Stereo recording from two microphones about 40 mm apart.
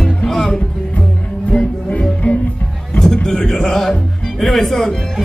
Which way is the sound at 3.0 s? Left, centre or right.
Centre.